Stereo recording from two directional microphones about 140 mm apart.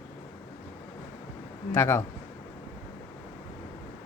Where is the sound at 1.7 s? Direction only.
15° left (ahead or behind).